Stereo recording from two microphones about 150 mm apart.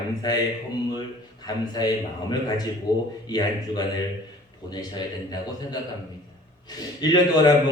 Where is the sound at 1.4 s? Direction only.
25° left (ahead or behind).